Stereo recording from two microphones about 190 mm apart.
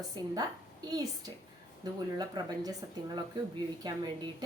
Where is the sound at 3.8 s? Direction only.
20° right (ahead or behind).